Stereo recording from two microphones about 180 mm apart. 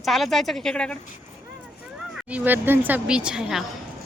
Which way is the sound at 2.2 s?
10° right (ahead or behind).